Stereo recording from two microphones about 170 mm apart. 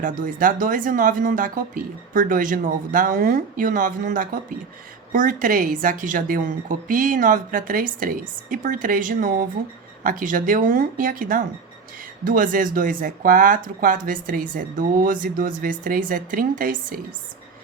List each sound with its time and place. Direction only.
0.0 s speech: 50° right (ahead or behind)